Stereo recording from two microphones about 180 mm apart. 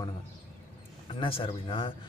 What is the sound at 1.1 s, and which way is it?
Speech, 30° left (ahead or behind).